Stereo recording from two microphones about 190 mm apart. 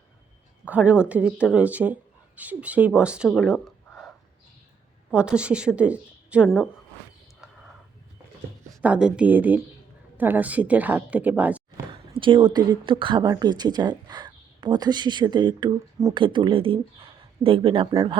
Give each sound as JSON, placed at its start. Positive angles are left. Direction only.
{"t": 0.6, "sound": "speech", "side_deg": -10}
{"t": 3.3, "sound": "a sound", "side_deg": 0}
{"t": 5.1, "sound": "a woman's voice", "side_deg": -5}
{"t": 7.4, "sound": "a sound", "side_deg": -5}
{"t": 8.7, "sound": "speech", "side_deg": -5}
{"t": 12.1, "sound": "speech", "side_deg": -25}